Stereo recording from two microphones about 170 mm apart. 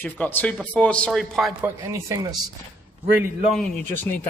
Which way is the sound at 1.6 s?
20° right (ahead or behind).